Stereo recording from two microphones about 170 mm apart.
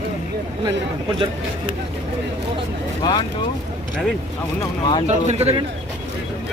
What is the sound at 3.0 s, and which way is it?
Speech, 25° left (ahead or behind).